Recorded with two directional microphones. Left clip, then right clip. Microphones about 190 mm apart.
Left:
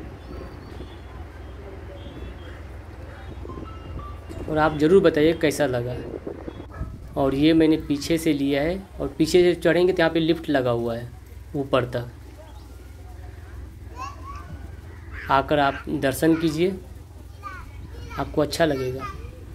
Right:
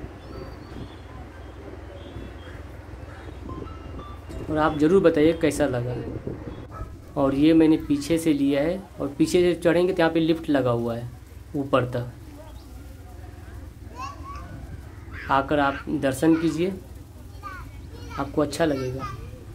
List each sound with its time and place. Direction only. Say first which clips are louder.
4.6 s speech: left 2 dB; centre (ahead or behind)
7.2 s speech: even; centre (ahead or behind)
13.9 s a sound: even; 55° left (ahead or behind)
15.2 s speech: left 2 dB; 5° left (ahead or behind)
17.4 s children playing: left 1 dB; 40° left (ahead or behind)
18.1 s speech: left 1 dB; centre (ahead or behind)
18.8 s a child's voice: left 2 dB; 40° left (ahead or behind)